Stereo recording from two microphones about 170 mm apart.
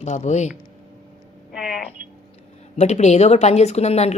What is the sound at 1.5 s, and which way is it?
Speech, 5° right (ahead or behind).